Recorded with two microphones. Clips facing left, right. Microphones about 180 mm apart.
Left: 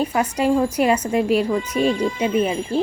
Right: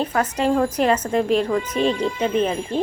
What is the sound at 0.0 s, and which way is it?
A woman's voice, 10° left (ahead or behind).